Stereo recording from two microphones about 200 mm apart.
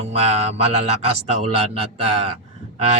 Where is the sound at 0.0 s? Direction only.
30° right (ahead or behind).